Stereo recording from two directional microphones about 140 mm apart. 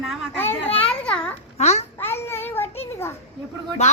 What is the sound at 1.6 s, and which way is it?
Speech, 50° left (ahead or behind).